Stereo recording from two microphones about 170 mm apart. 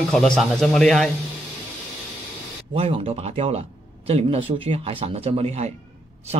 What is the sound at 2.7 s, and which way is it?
Speech, 35° right (ahead or behind).